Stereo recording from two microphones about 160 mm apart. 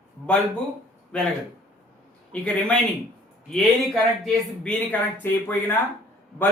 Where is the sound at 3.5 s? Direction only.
Centre (ahead or behind).